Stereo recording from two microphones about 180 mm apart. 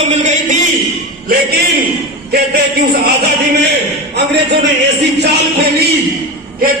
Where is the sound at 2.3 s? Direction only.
60° right (ahead or behind).